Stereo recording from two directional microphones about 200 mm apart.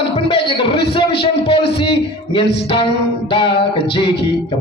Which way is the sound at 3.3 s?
25° left (ahead or behind).